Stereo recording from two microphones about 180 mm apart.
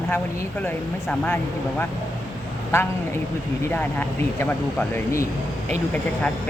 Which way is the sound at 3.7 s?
10° left (ahead or behind).